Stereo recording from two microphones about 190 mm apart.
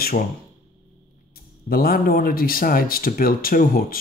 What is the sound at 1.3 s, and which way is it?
A man's voice, 50° left (ahead or behind).